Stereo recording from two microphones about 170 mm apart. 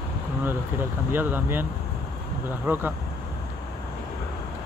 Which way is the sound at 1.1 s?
10° right (ahead or behind).